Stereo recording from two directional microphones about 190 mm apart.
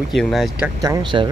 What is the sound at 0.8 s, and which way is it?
Speech, 20° right (ahead or behind).